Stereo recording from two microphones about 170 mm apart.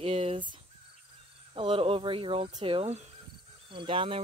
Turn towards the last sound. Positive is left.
turn(degrees=-30)  # may be behind; listen again after turning